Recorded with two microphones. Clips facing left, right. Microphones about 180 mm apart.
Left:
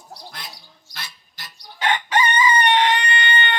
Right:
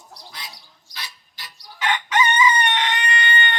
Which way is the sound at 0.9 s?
50° left (ahead or behind).